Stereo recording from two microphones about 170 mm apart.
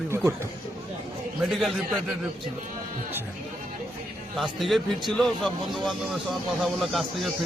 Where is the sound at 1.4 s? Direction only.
Centre (ahead or behind).